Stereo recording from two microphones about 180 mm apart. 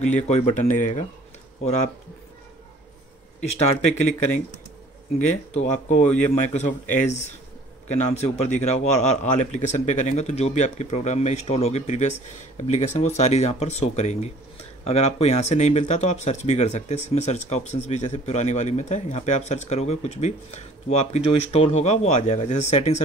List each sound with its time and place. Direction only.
0.0 s speech: 40° left (ahead or behind)
3.5 s speech: 40° left (ahead or behind)